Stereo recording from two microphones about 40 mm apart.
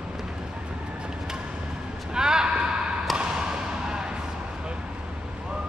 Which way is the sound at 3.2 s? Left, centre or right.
Right.